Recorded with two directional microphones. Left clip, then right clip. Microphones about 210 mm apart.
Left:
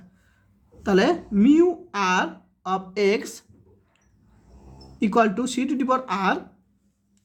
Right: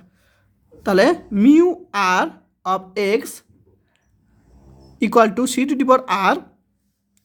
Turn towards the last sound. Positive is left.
turn(degrees=-35)  # may be behind; listen again after turning